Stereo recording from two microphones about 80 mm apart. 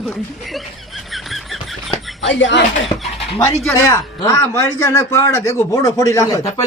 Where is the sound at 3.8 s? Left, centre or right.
Left.